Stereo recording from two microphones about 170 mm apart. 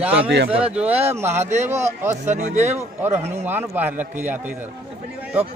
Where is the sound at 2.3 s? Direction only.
45° right (ahead or behind).